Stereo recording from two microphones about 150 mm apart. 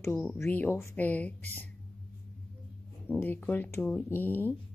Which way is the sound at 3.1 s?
15° left (ahead or behind).